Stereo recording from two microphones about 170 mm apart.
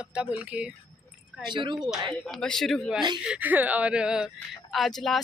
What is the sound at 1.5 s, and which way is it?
Speech, 25° right (ahead or behind).